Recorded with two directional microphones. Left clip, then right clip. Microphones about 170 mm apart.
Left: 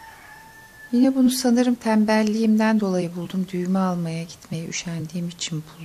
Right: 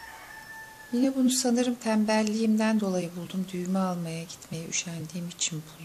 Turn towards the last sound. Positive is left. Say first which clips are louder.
# left 2 dB
turn(degrees=25)  # may be behind; listen again after turning